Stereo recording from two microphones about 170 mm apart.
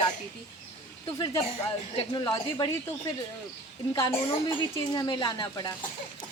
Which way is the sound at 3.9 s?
20° left (ahead or behind).